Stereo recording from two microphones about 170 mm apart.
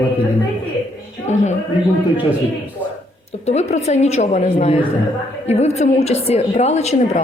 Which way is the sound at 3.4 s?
40° left (ahead or behind).